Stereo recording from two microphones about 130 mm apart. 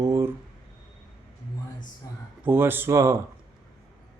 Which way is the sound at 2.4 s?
15° right (ahead or behind).